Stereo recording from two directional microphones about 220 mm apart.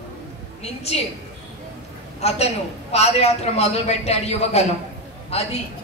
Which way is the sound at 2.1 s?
30° left (ahead or behind).